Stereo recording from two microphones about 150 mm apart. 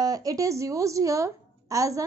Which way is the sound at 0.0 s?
25° right (ahead or behind).